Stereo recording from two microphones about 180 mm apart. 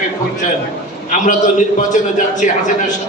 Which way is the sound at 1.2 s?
45° left (ahead or behind).